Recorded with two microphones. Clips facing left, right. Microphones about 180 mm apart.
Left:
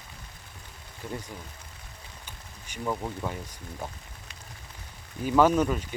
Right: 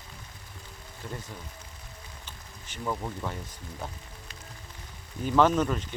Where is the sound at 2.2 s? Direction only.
10° left (ahead or behind).